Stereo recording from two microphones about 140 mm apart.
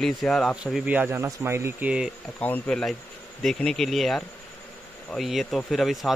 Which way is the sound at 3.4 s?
5° left (ahead or behind).